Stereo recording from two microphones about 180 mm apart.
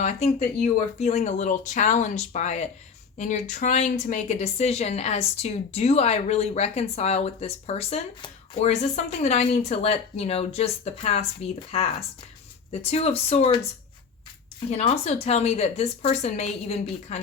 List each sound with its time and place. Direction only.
0.0 s a woman's voice: 40° left (ahead or behind)
14.8 s a woman's voice: 35° left (ahead or behind)